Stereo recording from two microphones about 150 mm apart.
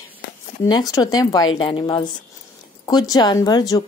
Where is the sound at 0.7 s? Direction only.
25° left (ahead or behind).